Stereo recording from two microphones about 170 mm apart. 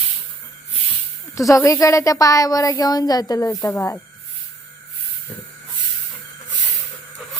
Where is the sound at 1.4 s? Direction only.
20° left (ahead or behind).